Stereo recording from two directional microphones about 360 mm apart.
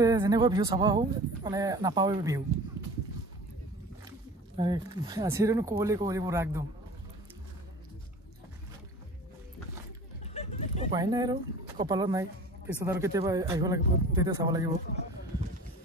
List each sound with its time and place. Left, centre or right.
0.0 s speech: centre
4.6 s speech: centre
10.3 s a sound: centre
10.9 s speech: centre